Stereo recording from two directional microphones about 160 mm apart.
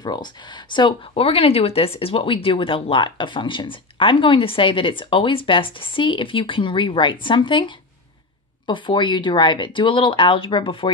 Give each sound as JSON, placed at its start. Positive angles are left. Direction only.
{"t": 0.0, "sound": "speech", "side_deg": 25}